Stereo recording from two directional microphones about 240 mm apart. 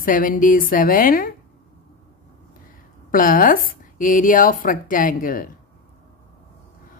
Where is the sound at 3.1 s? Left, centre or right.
Left.